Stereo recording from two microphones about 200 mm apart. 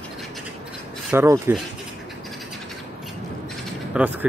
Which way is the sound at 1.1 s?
10° right (ahead or behind).